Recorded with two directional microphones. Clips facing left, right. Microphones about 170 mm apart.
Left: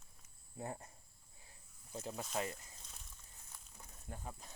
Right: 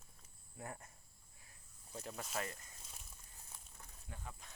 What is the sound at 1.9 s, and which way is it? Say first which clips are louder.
Speech: left 3 dB; 25° left (ahead or behind).